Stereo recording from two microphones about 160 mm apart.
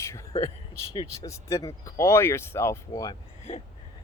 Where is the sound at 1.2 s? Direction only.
20° left (ahead or behind).